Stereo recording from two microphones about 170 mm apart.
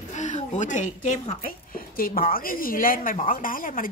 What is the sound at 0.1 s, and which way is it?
A woman's voice, 45° left (ahead or behind).